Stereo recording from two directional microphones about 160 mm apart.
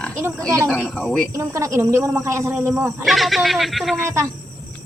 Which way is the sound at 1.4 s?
20° right (ahead or behind).